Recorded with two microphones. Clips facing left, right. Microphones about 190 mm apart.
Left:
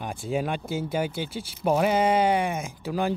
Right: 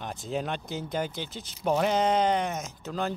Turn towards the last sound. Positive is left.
turn(degrees=10)  # may be behind; listen again after turning